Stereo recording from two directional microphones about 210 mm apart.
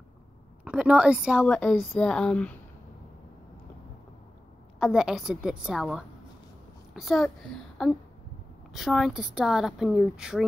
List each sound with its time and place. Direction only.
0.7 s speech: 5° right (ahead or behind)
4.7 s a child's voice: centre (ahead or behind)